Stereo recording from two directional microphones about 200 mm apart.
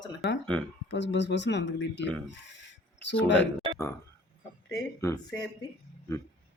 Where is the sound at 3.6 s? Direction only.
25° right (ahead or behind).